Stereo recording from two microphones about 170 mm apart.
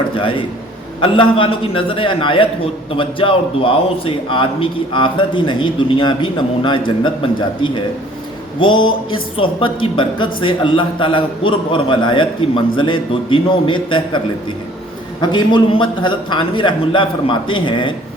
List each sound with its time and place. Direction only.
0.1 s a man's voice: 30° left (ahead or behind)
15.2 s a man's voice: 25° left (ahead or behind)